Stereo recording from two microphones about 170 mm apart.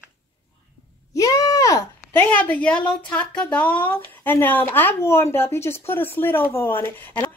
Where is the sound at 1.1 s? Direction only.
20° left (ahead or behind).